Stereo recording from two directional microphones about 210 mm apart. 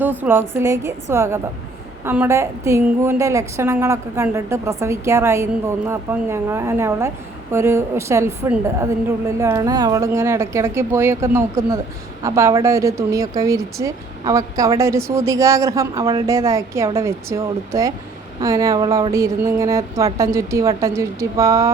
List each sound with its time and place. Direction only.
0.0 s a woman's voice: 10° right (ahead or behind)